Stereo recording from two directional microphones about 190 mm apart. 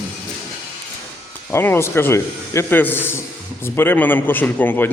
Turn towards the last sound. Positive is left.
turn(degrees=10)  # may be behind; listen again after turning